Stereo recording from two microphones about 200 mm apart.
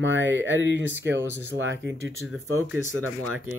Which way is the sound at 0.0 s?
70° right (ahead or behind).